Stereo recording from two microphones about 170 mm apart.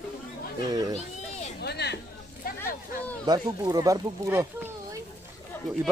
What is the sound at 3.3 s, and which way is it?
Speech, 20° right (ahead or behind).